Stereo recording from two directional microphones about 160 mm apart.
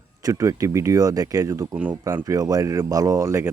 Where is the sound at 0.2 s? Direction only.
20° right (ahead or behind).